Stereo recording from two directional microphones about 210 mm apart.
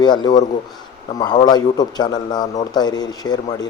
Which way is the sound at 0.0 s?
20° left (ahead or behind).